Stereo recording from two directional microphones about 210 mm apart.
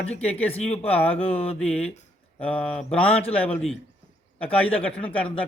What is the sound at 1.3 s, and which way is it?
Speech, 30° left (ahead or behind).